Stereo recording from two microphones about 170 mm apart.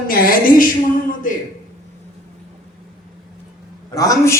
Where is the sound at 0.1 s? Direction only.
60° left (ahead or behind).